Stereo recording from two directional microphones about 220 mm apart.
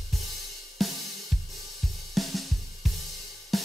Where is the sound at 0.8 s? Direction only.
Centre (ahead or behind).